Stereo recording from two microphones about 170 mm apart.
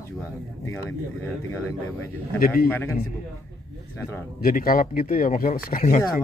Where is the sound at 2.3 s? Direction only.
60° left (ahead or behind).